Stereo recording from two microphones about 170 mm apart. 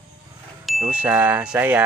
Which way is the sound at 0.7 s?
5° right (ahead or behind).